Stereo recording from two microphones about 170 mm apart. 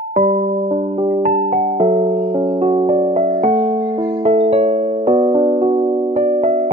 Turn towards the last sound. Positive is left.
turn(degrees=-45)  # may be behind; listen again after turning